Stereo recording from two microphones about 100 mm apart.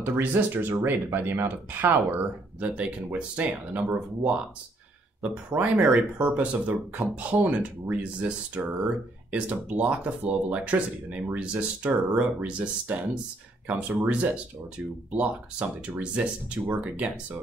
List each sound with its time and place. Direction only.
0.0 s speech: 20° right (ahead or behind)
15.8 s speech: 15° right (ahead or behind)